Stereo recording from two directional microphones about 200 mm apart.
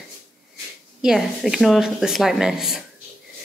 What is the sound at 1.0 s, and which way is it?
Speech, centre (ahead or behind).